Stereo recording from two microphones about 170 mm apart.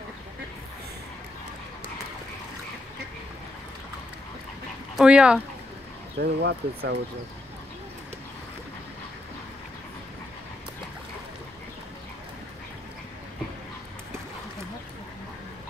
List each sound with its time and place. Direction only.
4.9 s speech: 5° right (ahead or behind)
6.1 s speech: 80° right